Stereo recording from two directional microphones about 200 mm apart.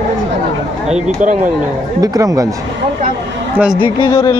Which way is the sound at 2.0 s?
15° right (ahead or behind).